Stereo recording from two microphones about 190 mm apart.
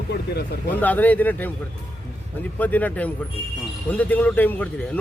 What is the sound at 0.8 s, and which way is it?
Speech, 10° left (ahead or behind).